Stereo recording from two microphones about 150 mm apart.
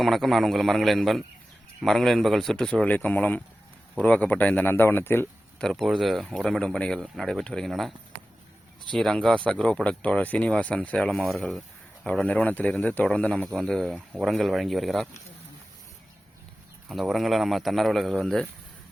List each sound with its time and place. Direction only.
0.0 s a man's voice: centre (ahead or behind)
5.6 s a man's voice: centre (ahead or behind)
9.0 s a man's voice: centre (ahead or behind)
16.9 s a man's voice: centre (ahead or behind)